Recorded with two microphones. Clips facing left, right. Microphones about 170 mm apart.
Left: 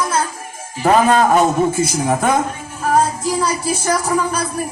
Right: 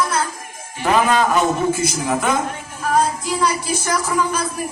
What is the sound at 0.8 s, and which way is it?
Speech, 40° left (ahead or behind).